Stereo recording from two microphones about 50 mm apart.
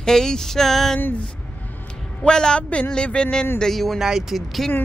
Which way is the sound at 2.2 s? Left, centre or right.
Centre.